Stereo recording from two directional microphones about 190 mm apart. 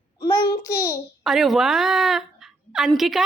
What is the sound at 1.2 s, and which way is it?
A woman's voice, centre (ahead or behind).